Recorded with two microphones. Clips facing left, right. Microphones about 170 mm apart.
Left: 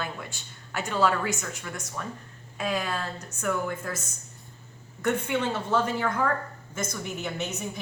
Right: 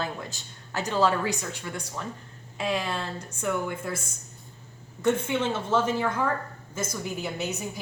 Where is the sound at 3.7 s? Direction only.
15° right (ahead or behind).